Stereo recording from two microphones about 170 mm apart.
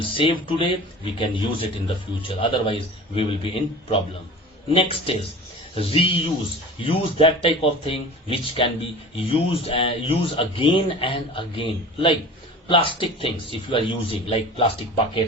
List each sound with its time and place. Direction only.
0.0 s speech: 30° left (ahead or behind)